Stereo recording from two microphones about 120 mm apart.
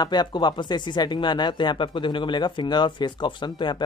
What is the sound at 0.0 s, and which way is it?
Speech, 35° left (ahead or behind).